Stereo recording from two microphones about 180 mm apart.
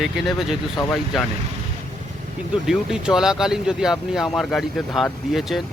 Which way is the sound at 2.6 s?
5° right (ahead or behind).